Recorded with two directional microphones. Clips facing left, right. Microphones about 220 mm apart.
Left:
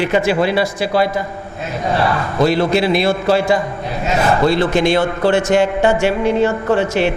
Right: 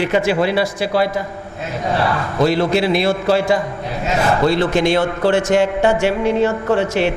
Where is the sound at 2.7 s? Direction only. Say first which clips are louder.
Left 1 dB; 15° left (ahead or behind).